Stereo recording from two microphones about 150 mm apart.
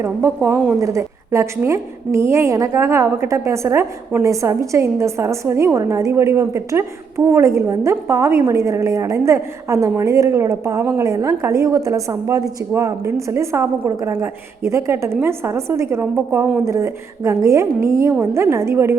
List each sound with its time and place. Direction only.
0.0 s a woman's voice: 20° right (ahead or behind)